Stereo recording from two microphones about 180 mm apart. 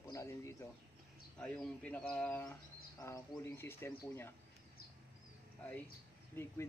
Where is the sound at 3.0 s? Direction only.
20° left (ahead or behind).